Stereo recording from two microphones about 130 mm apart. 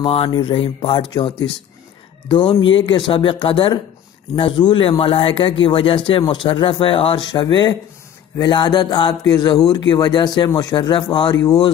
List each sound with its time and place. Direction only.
0.0 s speech: 45° left (ahead or behind)